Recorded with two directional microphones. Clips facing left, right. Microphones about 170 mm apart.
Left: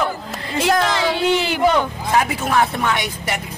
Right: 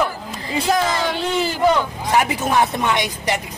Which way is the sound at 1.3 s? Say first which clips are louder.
Left 2 dB; 80° left.